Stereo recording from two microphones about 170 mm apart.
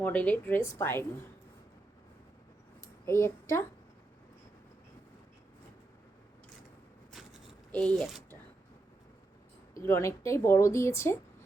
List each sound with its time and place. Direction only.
0.0 s a woman's voice: 10° left (ahead or behind)
2.8 s a child's voice: 15° left (ahead or behind)
7.1 s a sound: centre (ahead or behind)
9.7 s a woman's voice: 15° left (ahead or behind)